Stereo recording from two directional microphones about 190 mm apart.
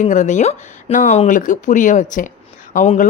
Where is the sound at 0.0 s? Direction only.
40° left (ahead or behind).